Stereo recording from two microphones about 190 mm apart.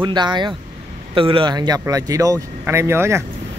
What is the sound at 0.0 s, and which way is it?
Speech, 25° right (ahead or behind).